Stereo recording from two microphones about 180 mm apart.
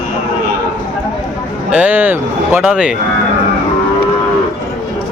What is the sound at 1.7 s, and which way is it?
Speech, 10° right (ahead or behind).